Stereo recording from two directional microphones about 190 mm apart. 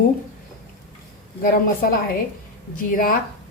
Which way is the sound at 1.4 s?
50° left (ahead or behind).